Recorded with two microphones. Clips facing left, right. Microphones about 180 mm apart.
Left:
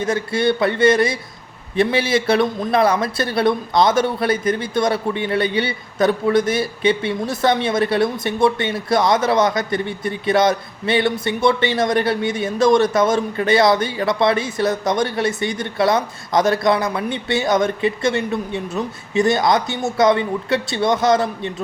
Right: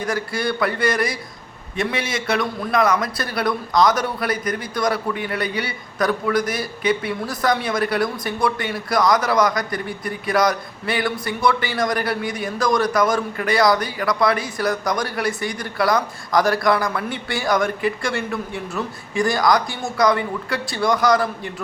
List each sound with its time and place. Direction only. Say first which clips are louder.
0.0 s a man's voice: left 5 dB; 25° left (ahead or behind)